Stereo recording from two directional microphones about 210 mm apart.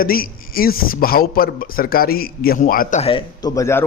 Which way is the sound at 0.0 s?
45° left (ahead or behind).